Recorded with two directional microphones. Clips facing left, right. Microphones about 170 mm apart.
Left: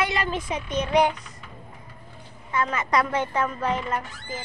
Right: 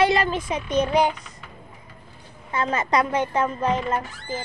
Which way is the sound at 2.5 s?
30° right (ahead or behind).